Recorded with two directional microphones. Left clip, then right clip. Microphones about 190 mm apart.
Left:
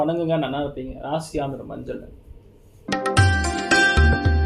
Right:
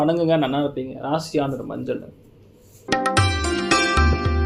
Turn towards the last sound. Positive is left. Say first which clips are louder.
# left 2 dB
turn(degrees=0)  # may be behind; listen again after turning